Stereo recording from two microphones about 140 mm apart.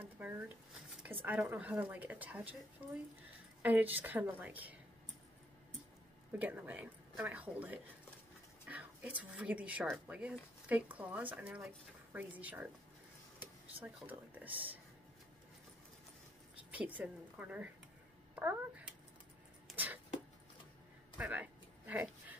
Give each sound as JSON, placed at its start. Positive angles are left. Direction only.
{"t": 0.0, "sound": "speech", "side_deg": -15}
{"t": 3.6, "sound": "speech", "side_deg": -10}
{"t": 6.3, "sound": "speech", "side_deg": -15}
{"t": 14.0, "sound": "speech", "side_deg": -10}
{"t": 14.5, "sound": "speech", "side_deg": -40}
{"t": 16.7, "sound": "speech", "side_deg": -10}
{"t": 18.3, "sound": "a sound", "side_deg": -10}
{"t": 19.7, "sound": "a sound", "side_deg": -10}
{"t": 21.2, "sound": "a sound", "side_deg": -10}